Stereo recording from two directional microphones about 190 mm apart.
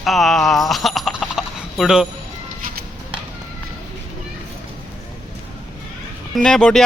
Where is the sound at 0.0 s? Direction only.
Centre (ahead or behind).